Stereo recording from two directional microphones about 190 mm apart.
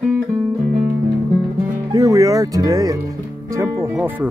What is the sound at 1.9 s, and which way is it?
Speech, 20° right (ahead or behind).